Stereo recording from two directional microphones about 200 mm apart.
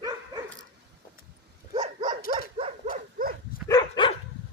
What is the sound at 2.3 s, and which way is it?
Dog, 30° right (ahead or behind).